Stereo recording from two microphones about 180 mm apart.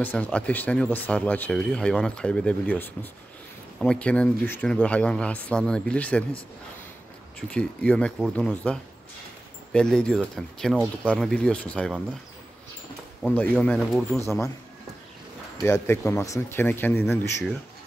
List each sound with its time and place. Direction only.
0.0 s speech: 10° left (ahead or behind)
7.3 s speech: 5° left (ahead or behind)
13.4 s speech: 5° left (ahead or behind)
14.1 s speech: 15° left (ahead or behind)
15.6 s speech: 15° left (ahead or behind)